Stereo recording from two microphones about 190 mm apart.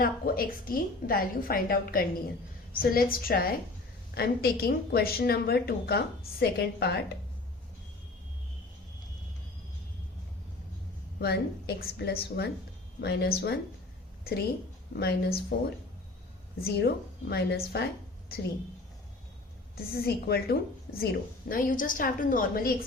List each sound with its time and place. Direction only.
0.0 s a woman's voice: 50° left (ahead or behind)
11.2 s a woman's voice: 60° left (ahead or behind)
14.9 s a woman's voice: 60° left (ahead or behind)
16.6 s a woman's voice: 55° left (ahead or behind)
19.7 s a woman's voice: 55° left (ahead or behind)